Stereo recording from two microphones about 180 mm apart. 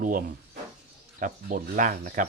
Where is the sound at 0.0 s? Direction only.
50° right (ahead or behind).